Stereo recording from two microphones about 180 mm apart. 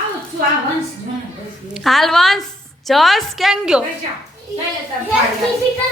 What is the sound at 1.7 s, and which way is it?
A woman's voice, centre (ahead or behind).